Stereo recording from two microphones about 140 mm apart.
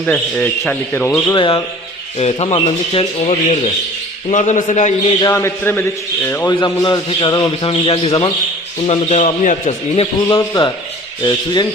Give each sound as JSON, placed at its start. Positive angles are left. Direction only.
{"t": 0.0, "sound": "speech", "side_deg": 5}
{"t": 1.3, "sound": "a man's voice", "side_deg": 35}
{"t": 5.2, "sound": "a man's voice", "side_deg": 20}
{"t": 6.5, "sound": "a man's voice", "side_deg": 30}
{"t": 7.7, "sound": "speech", "side_deg": 45}
{"t": 9.9, "sound": "speech", "side_deg": 40}